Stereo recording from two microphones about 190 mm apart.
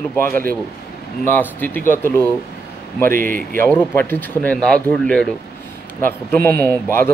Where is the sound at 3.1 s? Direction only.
45° right (ahead or behind).